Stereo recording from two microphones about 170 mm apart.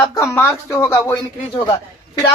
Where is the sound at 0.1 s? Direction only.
15° left (ahead or behind).